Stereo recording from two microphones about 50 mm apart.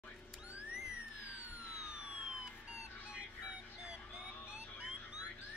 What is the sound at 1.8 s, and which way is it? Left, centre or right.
Police car, centre.